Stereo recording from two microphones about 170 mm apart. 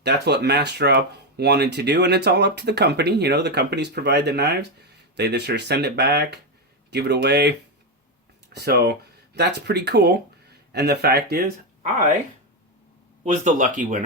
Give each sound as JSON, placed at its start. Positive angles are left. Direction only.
{"t": 0.0, "sound": "speech", "side_deg": -80}
{"t": 8.5, "sound": "speech", "side_deg": -70}
{"t": 11.8, "sound": "speech", "side_deg": -45}
{"t": 13.2, "sound": "speech", "side_deg": -45}